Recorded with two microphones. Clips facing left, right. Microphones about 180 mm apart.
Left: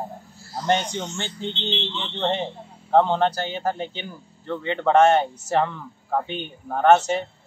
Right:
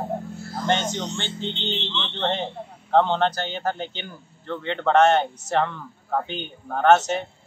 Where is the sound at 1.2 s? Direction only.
25° right (ahead or behind).